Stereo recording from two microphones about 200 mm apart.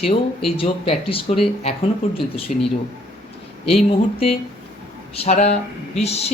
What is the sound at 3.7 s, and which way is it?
Speech, 30° left (ahead or behind).